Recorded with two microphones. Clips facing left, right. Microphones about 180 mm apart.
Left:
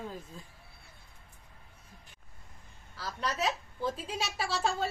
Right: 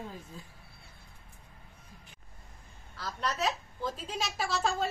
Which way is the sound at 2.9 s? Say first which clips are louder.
Right 1 dB; 5° left (ahead or behind).